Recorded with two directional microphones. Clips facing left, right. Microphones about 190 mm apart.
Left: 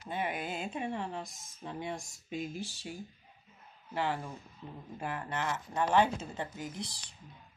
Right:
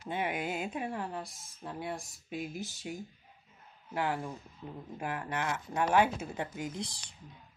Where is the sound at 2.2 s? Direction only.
5° right (ahead or behind).